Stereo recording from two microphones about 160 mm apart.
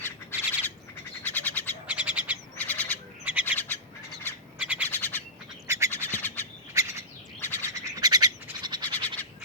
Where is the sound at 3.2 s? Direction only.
10° right (ahead or behind).